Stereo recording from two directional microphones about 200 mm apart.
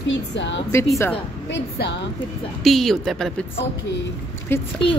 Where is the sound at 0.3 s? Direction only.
65° left (ahead or behind).